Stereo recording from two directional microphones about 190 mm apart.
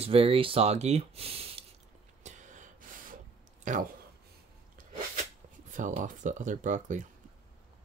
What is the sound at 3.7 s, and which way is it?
Speech, 40° right (ahead or behind).